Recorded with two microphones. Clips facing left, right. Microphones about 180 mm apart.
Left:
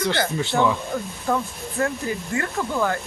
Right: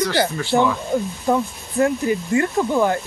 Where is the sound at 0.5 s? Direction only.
20° right (ahead or behind).